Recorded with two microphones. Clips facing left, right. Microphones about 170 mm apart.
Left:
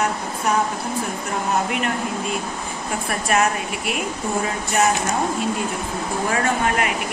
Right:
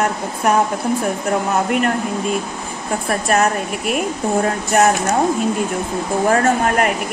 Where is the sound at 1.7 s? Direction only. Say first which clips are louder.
Right 6 dB; 50° right (ahead or behind).